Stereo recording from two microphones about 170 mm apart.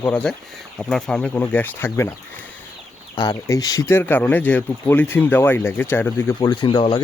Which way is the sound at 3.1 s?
20° left (ahead or behind).